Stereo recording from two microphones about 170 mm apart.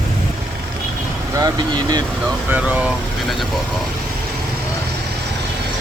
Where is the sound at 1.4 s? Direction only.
20° right (ahead or behind).